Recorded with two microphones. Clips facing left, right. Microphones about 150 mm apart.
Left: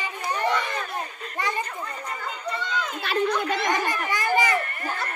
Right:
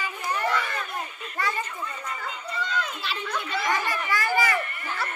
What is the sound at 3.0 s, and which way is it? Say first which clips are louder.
Children playing: left 8 dB; 45° left (ahead or behind).